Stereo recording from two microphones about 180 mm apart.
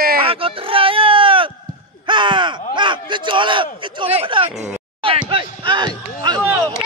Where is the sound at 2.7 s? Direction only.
25° right (ahead or behind).